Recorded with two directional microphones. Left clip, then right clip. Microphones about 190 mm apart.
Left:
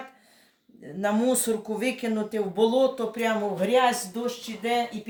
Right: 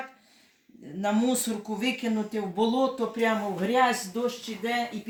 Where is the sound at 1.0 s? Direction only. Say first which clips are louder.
Left 3 dB; 30° left (ahead or behind).